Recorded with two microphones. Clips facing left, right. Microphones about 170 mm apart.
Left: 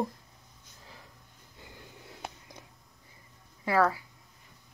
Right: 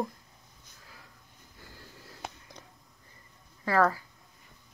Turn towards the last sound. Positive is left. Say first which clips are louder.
# even
turn(degrees=10)  # may be behind; listen again after turning